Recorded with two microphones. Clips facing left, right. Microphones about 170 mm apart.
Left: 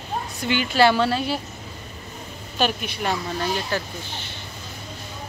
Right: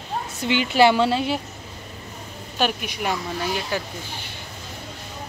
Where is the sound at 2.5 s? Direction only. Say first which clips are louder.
Even; 15° right (ahead or behind).